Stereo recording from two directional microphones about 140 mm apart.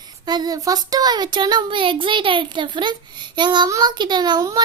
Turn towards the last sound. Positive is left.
turn(degrees=-25)  # may be behind; listen again after turning